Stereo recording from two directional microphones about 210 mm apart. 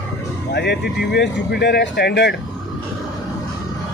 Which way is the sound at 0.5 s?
55° left (ahead or behind).